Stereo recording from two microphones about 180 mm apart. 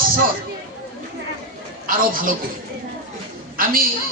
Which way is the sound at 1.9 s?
50° right (ahead or behind).